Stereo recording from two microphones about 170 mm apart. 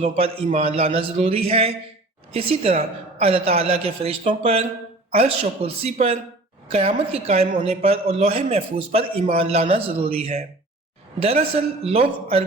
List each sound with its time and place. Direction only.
0.0 s a woman's voice: 40° right (ahead or behind)